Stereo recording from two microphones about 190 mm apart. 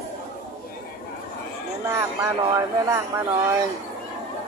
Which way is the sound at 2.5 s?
15° right (ahead or behind).